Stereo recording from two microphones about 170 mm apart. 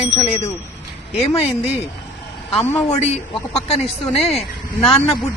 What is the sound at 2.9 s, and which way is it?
Speech, 40° left (ahead or behind).